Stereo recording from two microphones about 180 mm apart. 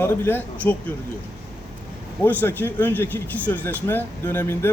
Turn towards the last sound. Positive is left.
turn(degrees=15)  # may be behind; listen again after turning